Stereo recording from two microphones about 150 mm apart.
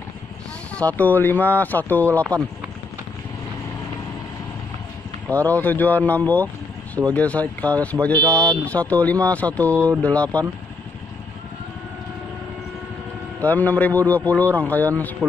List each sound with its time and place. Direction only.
0.7 s speech: 10° left (ahead or behind)
5.3 s speech: 10° left (ahead or behind)
13.4 s speech: 10° left (ahead or behind)